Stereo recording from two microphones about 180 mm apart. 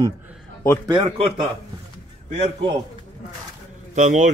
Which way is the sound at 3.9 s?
45° right (ahead or behind).